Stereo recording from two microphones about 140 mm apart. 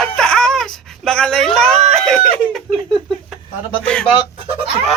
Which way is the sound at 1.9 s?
5° left (ahead or behind).